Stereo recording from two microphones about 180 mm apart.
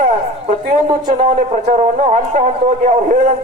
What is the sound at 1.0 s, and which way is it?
A man's voice, 45° right (ahead or behind).